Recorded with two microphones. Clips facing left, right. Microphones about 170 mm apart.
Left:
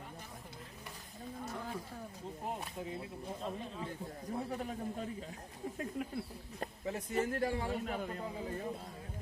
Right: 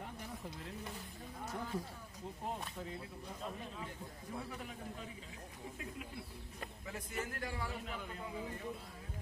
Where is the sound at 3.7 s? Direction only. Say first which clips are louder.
Left 5 dB; 30° left (ahead or behind).